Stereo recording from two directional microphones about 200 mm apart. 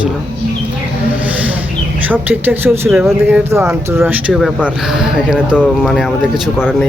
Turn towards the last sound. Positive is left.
turn(degrees=-5)  # may be behind; listen again after turning